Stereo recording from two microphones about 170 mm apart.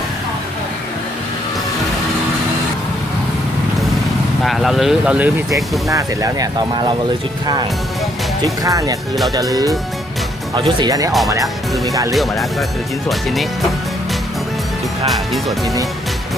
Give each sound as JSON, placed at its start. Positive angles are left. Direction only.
{"t": 4.4, "sound": "speech", "side_deg": 0}
{"t": 5.9, "sound": "speech", "side_deg": -20}
{"t": 12.1, "sound": "speech", "side_deg": 0}
{"t": 15.0, "sound": "speech", "side_deg": 0}